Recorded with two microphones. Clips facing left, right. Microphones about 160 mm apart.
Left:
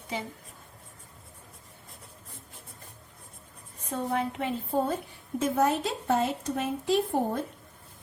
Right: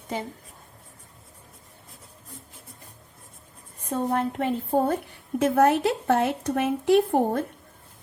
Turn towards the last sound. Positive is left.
turn(degrees=-60)  # may be behind; listen again after turning